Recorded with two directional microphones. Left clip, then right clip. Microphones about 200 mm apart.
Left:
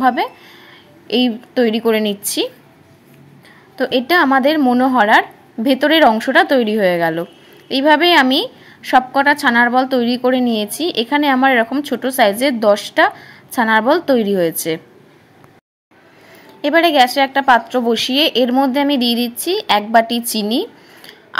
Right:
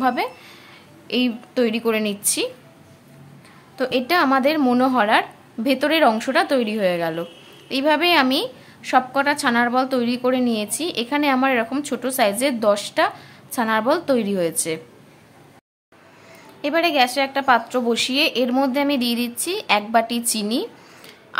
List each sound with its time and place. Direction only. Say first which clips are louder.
0.0 s speech: left 6 dB; 10° left (ahead or behind)
3.7 s speech: left 5 dB; 15° left (ahead or behind)
16.6 s speech: left 7 dB; 20° left (ahead or behind)